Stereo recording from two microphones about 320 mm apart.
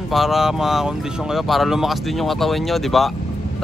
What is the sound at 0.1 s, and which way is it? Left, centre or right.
Speech, centre.